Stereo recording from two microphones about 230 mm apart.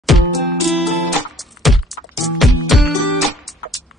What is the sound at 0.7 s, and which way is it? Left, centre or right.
Music, centre.